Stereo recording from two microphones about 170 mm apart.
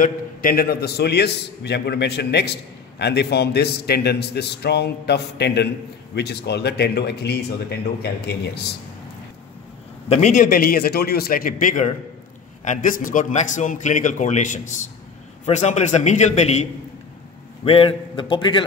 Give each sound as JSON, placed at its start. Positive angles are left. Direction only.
{"t": 0.0, "sound": "a man's voice", "side_deg": 55}
{"t": 10.0, "sound": "a man's voice", "side_deg": 40}
{"t": 17.6, "sound": "a man's voice", "side_deg": 30}